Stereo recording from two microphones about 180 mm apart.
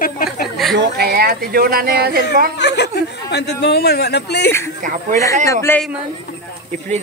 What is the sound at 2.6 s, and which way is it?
Speech, 70° left (ahead or behind).